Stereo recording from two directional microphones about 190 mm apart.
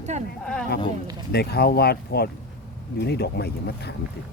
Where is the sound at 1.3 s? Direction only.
55° left (ahead or behind).